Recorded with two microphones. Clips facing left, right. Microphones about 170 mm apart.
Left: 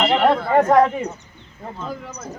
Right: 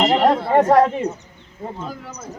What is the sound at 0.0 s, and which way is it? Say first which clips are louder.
Chatter: right 1 dB; 40° right (ahead or behind).